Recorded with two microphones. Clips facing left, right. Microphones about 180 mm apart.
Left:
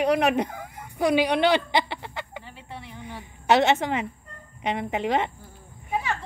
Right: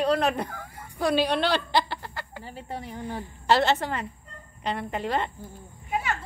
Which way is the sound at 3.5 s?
20° left (ahead or behind).